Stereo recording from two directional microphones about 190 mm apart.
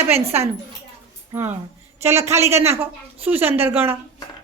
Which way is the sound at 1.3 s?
10° right (ahead or behind).